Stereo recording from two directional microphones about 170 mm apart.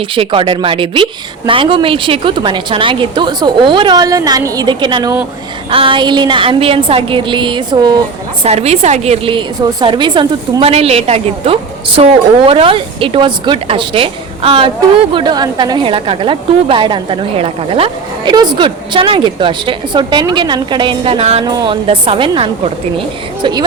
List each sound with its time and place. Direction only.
0.1 s a woman's voice: 30° right (ahead or behind)
8.4 s a woman's voice: 40° right (ahead or behind)
21.4 s a woman's voice: 25° right (ahead or behind)
23.4 s a woman's voice: 25° right (ahead or behind)